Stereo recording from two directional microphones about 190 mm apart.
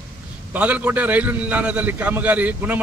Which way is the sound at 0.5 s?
5° right (ahead or behind).